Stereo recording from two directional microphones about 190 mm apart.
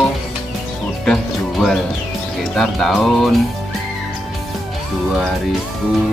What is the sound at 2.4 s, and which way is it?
Speech, centre (ahead or behind).